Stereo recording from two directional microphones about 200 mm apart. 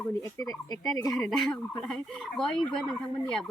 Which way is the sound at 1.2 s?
Centre (ahead or behind).